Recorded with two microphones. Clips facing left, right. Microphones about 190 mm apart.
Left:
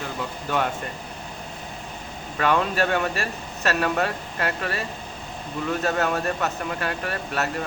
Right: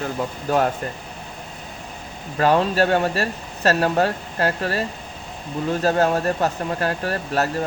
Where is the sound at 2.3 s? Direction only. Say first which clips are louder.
Right 5 dB; 35° right (ahead or behind).